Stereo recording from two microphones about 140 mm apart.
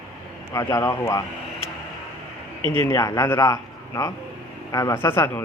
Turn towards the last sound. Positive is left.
turn(degrees=15)  # may be behind; listen again after turning